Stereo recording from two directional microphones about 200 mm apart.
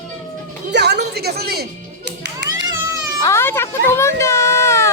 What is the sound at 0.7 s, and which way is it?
Speech, 55° right (ahead or behind).